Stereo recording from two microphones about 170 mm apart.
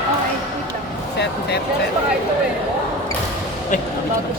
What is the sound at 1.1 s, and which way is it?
Speech, 80° left.